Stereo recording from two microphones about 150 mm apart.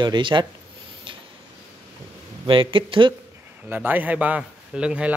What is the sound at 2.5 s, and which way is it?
Speech, 35° right (ahead or behind).